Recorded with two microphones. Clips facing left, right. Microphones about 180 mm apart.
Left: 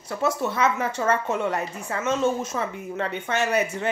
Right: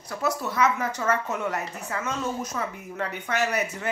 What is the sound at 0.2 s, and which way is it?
A woman's voice, 25° left (ahead or behind).